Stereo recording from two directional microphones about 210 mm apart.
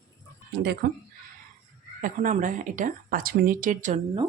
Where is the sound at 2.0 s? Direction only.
40° right (ahead or behind).